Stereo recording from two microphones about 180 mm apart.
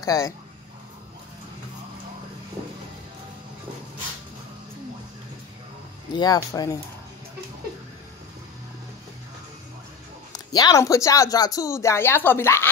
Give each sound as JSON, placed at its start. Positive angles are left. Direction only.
{"t": 0.0, "sound": "speech", "side_deg": 20}
{"t": 6.1, "sound": "speech", "side_deg": 20}
{"t": 10.3, "sound": "speech", "side_deg": 20}